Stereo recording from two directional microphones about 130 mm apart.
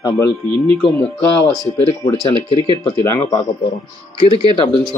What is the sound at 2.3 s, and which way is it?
Speech, 35° right (ahead or behind).